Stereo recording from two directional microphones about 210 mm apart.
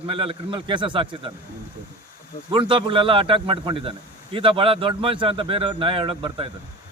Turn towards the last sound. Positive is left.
turn(degrees=-25)  # may be behind; listen again after turning